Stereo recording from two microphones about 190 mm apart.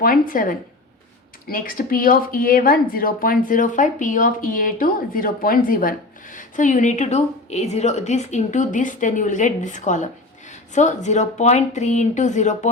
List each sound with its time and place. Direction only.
0.0 s speech: 50° left (ahead or behind)